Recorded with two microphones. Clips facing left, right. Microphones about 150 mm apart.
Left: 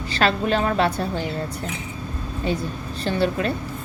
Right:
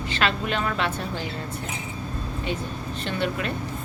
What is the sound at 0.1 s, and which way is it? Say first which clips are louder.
A woman's voice: left 5 dB; 35° left (ahead or behind).